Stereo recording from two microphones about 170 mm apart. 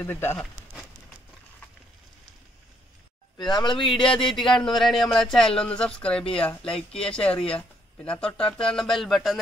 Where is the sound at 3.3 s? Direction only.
25° left (ahead or behind).